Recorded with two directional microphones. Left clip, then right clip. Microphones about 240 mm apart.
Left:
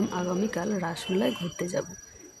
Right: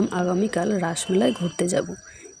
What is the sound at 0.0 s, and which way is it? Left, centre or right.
Speech, centre.